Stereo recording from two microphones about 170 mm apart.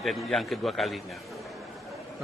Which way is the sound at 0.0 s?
Centre (ahead or behind).